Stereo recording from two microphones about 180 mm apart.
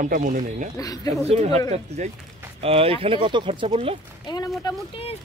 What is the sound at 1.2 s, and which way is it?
Speech, 35° right (ahead or behind).